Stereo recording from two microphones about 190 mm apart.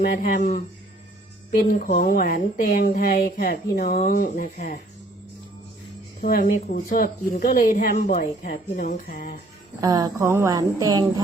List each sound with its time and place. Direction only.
0.1 s speech: 45° left (ahead or behind)
1.8 s speech: 45° left (ahead or behind)
6.2 s speech: 50° left (ahead or behind)
9.8 s speech: 20° right (ahead or behind)